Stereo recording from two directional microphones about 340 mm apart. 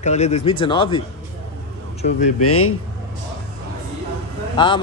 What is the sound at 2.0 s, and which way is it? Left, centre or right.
Speech, left.